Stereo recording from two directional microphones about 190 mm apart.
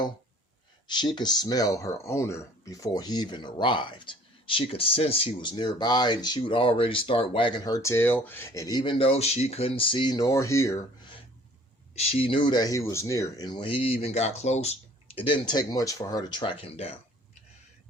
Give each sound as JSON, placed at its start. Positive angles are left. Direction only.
{"t": 0.9, "sound": "speech", "side_deg": 25}
{"t": 11.9, "sound": "speech", "side_deg": 30}